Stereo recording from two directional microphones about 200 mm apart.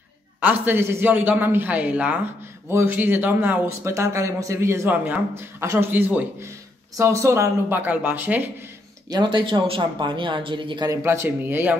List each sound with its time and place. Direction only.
0.4 s speech: 10° right (ahead or behind)
9.1 s speech: 20° right (ahead or behind)